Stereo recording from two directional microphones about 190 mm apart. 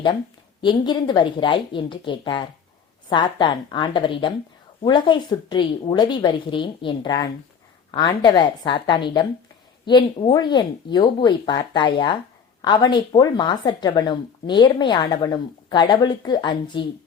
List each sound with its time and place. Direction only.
0.6 s a woman's voice: 25° left (ahead or behind)